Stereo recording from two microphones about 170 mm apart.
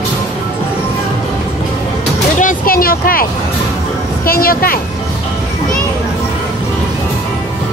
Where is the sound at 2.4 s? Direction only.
55° left (ahead or behind).